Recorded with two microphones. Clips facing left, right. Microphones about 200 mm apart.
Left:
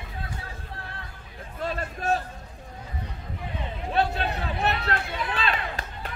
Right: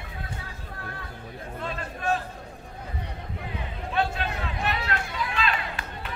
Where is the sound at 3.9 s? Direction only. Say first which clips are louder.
Left 2 dB; 35° left (ahead or behind).